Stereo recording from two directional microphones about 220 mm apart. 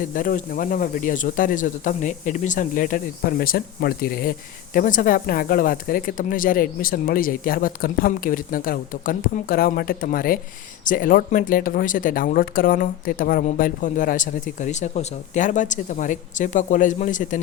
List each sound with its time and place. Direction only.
0.0 s speech: 40° left (ahead or behind)